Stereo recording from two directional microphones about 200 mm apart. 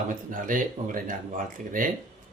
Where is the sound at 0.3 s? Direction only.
40° right (ahead or behind).